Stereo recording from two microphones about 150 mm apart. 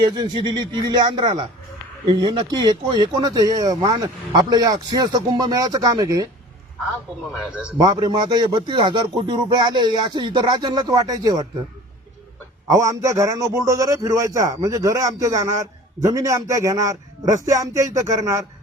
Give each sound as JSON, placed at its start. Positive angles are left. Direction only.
{"t": 0.0, "sound": "a man's voice", "side_deg": -30}
{"t": 7.8, "sound": "a man's voice", "side_deg": -25}
{"t": 12.6, "sound": "a man's voice", "side_deg": -20}